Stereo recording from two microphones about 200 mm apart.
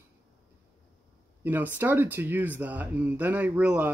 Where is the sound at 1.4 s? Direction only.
10° right (ahead or behind).